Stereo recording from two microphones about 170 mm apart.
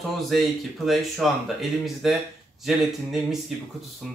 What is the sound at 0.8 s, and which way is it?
Speech, centre (ahead or behind).